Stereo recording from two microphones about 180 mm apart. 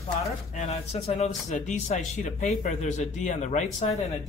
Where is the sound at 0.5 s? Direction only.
40° left (ahead or behind).